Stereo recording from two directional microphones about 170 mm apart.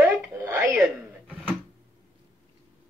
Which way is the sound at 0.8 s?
5° left (ahead or behind).